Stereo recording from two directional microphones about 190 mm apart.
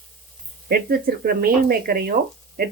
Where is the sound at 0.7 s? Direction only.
55° right (ahead or behind).